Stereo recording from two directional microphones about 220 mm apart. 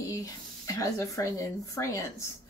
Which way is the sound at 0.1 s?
15° left (ahead or behind).